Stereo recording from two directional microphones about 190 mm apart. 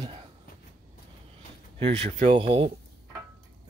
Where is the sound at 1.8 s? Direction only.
35° right (ahead or behind).